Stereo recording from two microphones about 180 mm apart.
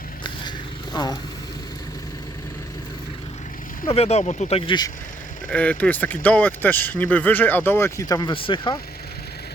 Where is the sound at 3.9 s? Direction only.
35° left (ahead or behind).